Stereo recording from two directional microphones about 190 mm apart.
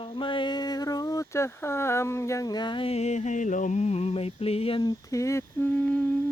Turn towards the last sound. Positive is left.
turn(degrees=5)  # may be behind; listen again after turning